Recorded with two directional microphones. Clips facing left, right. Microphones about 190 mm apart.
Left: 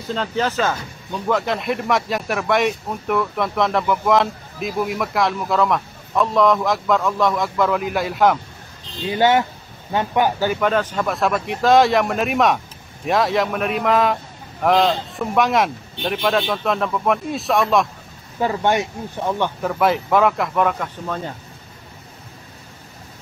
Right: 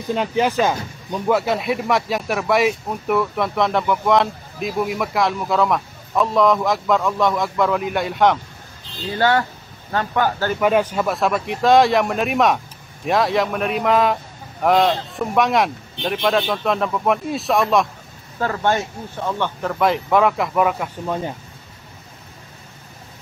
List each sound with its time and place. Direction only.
0.1 s speech: 15° right (ahead or behind)
9.0 s speech: 15° left (ahead or behind)
10.6 s speech: 10° right (ahead or behind)
18.4 s speech: 15° left (ahead or behind)
19.7 s speech: centre (ahead or behind)